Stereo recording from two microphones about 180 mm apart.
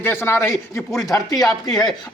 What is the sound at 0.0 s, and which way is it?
Speech, 15° left (ahead or behind).